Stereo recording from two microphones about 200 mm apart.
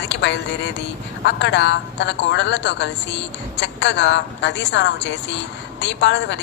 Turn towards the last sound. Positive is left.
turn(degrees=65)  # may be behind; listen again after turning